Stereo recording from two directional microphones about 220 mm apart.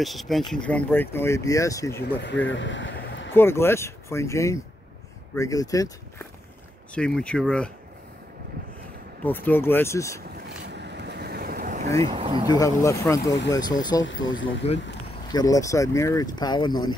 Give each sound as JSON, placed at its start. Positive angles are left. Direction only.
{"t": 0.0, "sound": "speech", "side_deg": 0}
{"t": 2.2, "sound": "speech", "side_deg": 55}
{"t": 3.3, "sound": "speech", "side_deg": 10}
{"t": 7.0, "sound": "speech", "side_deg": 5}
{"t": 9.2, "sound": "speech", "side_deg": 10}
{"t": 10.7, "sound": "boat", "side_deg": -50}
{"t": 12.0, "sound": "speech", "side_deg": -25}
{"t": 12.4, "sound": "speech", "side_deg": 15}
{"t": 14.0, "sound": "speech", "side_deg": 60}
{"t": 15.3, "sound": "speech", "side_deg": 15}